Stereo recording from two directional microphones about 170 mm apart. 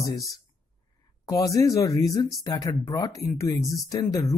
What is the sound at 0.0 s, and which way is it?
Speech, 20° left (ahead or behind).